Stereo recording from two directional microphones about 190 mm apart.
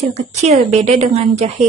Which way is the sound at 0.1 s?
35° right (ahead or behind).